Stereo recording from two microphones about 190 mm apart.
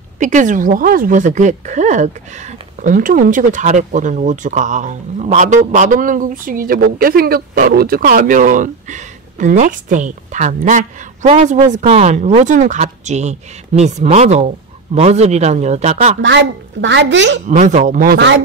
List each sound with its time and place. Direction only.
0.2 s speech: 40° right (ahead or behind)
16.2 s a woman's voice: 70° right (ahead or behind)
17.5 s speech: 40° right (ahead or behind); by 18.4 s 60° right (ahead or behind)